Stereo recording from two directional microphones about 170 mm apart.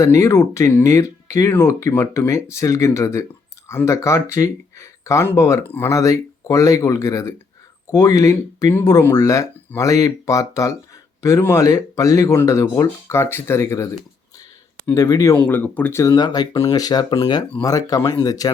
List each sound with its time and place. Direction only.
0.0 s speech: 15° left (ahead or behind)
14.9 s speech: 20° left (ahead or behind)